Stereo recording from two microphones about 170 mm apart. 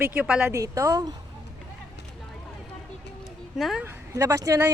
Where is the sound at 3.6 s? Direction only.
Centre (ahead or behind).